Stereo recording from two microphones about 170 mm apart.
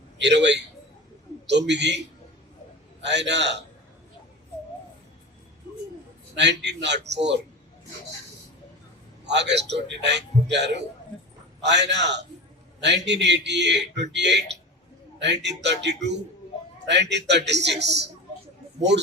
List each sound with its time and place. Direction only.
0.2 s a man's voice: 90° right
3.0 s a man's voice: 90° right
6.3 s a man's voice: 90° right
9.2 s a man's voice: 90° right